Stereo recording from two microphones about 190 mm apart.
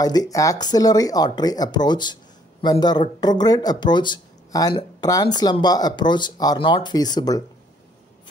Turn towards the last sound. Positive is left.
turn(degrees=20)  # may be behind; listen again after turning